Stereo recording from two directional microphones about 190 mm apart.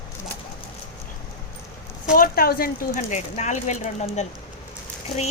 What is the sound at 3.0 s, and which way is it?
Speech, 40° left (ahead or behind).